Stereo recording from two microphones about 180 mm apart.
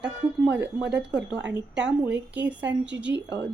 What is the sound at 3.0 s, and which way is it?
Speech, 85° right.